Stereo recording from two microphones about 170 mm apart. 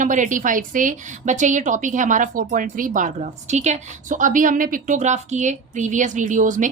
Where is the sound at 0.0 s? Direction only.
50° right (ahead or behind).